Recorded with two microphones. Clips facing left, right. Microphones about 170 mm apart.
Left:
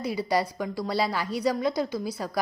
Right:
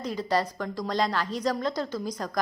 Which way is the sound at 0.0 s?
10° left (ahead or behind).